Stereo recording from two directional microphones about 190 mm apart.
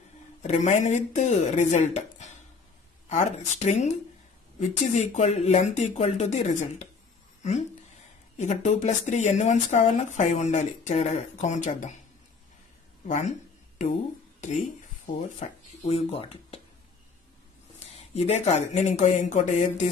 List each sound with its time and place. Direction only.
0.4 s speech: 40° left (ahead or behind)
8.4 s speech: 40° left (ahead or behind)
13.0 s speech: 40° left (ahead or behind)
15.0 s speech: 40° left (ahead or behind)
17.7 s speech: 35° left (ahead or behind)